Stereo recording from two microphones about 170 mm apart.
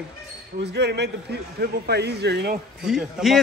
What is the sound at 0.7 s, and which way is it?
A man's voice, 80° right.